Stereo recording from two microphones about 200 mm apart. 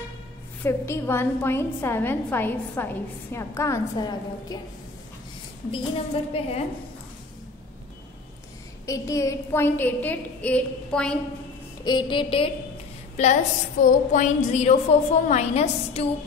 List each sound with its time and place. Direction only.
0.7 s a woman's voice: 10° left (ahead or behind)
5.7 s a woman's voice: 30° left (ahead or behind)
8.8 s a woman's voice: 15° left (ahead or behind)
11.8 s a woman's voice: 25° left (ahead or behind)
13.1 s a woman's voice: 35° left (ahead or behind)